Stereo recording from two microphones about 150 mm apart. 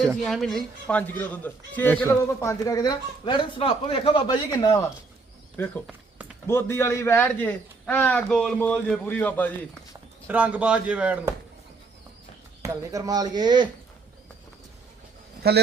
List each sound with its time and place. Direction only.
0.2 s speech: centre (ahead or behind); by 4.9 s 25° left (ahead or behind)
6.5 s a man's voice: 15° left (ahead or behind)
10.2 s a man's voice: 10° right (ahead or behind)
12.6 s speech: 20° right (ahead or behind)